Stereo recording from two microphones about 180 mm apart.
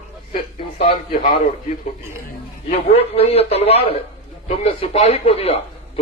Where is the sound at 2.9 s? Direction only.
35° left (ahead or behind).